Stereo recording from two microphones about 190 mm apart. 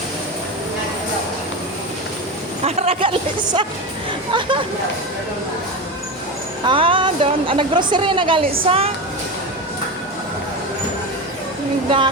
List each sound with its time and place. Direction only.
2.6 s a woman's voice: 35° right (ahead or behind)
6.7 s a woman's voice: 25° right (ahead or behind)